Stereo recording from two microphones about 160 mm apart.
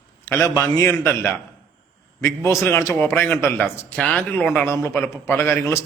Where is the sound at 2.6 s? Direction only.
15° left (ahead or behind).